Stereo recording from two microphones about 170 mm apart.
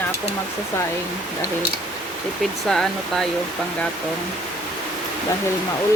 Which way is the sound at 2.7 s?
5° left (ahead or behind).